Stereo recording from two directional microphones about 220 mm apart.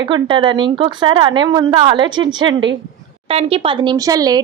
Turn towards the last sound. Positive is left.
turn(degrees=-15)  # may be behind; listen again after turning